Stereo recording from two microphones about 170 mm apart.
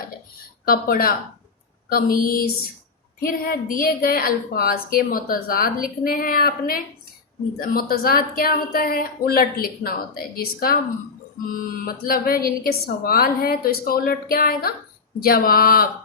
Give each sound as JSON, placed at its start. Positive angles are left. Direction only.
{"t": 0.7, "sound": "a woman's voice", "side_deg": 60}